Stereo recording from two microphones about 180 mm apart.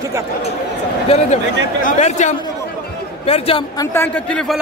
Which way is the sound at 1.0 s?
35° left (ahead or behind).